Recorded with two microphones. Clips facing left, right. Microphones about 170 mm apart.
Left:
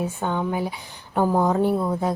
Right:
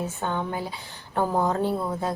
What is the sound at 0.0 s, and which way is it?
Speech, 15° left (ahead or behind).